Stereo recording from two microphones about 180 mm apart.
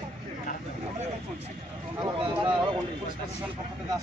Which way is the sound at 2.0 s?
25° right (ahead or behind).